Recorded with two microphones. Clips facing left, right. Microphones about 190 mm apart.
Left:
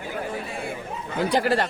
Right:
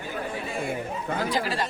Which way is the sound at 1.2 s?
65° left (ahead or behind).